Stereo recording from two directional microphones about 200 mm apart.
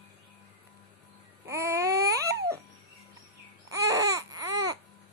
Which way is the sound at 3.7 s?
15° right (ahead or behind).